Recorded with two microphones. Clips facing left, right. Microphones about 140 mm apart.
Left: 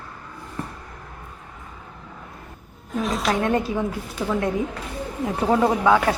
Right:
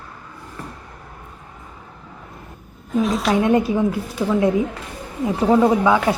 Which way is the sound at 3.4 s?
10° right (ahead or behind).